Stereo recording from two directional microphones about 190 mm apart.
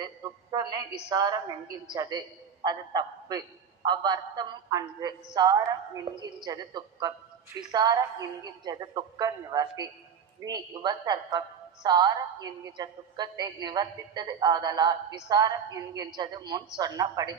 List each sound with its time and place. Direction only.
0.0 s a woman's voice: 25° right (ahead or behind)